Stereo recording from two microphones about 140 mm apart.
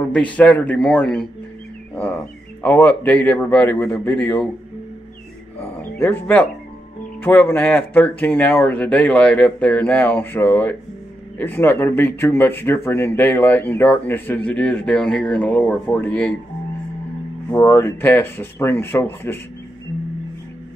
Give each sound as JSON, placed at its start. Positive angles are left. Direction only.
{"t": 0.1, "sound": "speech", "side_deg": 10}
{"t": 2.6, "sound": "speech", "side_deg": 10}
{"t": 5.6, "sound": "music", "side_deg": 15}
{"t": 7.2, "sound": "speech", "side_deg": 15}
{"t": 17.5, "sound": "speech", "side_deg": 20}